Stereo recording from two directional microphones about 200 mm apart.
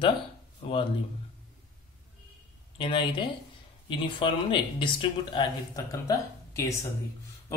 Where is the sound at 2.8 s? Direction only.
25° left (ahead or behind).